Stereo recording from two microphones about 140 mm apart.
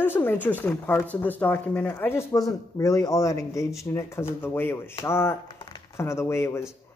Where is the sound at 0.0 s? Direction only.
15° left (ahead or behind).